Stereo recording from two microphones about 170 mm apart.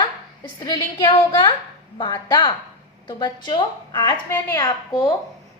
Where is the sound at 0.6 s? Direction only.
25° left (ahead or behind).